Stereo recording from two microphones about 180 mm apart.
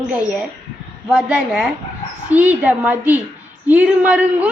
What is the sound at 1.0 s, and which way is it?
A woman's voice, centre (ahead or behind).